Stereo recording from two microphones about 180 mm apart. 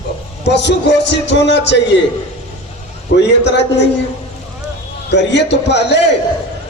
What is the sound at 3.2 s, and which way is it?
Speech, 75° left (ahead or behind).